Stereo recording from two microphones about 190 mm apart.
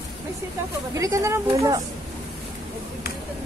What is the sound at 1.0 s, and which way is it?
Speech, 15° right (ahead or behind).